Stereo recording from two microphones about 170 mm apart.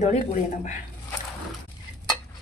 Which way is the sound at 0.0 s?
45° left (ahead or behind).